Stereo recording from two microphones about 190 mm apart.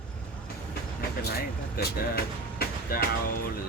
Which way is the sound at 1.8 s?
55° left (ahead or behind).